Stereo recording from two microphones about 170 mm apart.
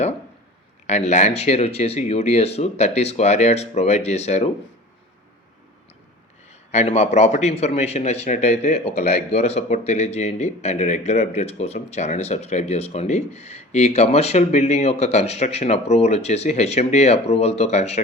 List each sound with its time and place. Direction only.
0.9 s a man's voice: 40° left (ahead or behind)
6.7 s a man's voice: 40° left (ahead or behind)